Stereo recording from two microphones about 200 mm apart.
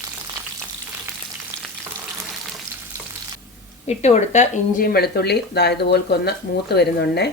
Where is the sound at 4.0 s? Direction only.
35° left (ahead or behind); by 7.3 s 55° left (ahead or behind).